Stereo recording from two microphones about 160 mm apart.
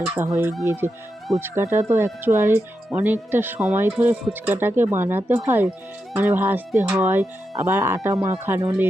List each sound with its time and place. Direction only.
0.2 s speech: 15° right (ahead or behind)